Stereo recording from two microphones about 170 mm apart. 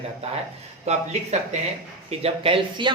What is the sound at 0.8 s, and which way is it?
A man's voice, 40° right (ahead or behind).